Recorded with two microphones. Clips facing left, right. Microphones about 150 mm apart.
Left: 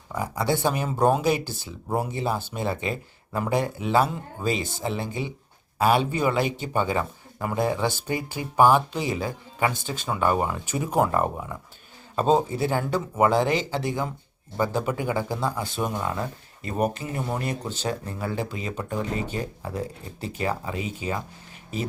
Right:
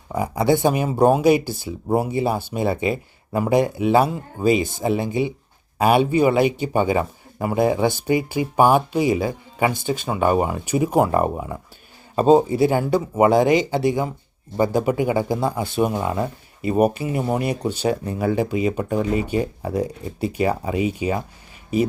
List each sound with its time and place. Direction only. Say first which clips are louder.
0.2 s speech: right 7 dB; 15° right (ahead or behind)